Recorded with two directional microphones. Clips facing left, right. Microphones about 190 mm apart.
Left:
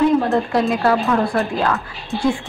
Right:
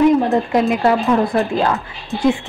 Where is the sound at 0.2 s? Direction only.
20° right (ahead or behind).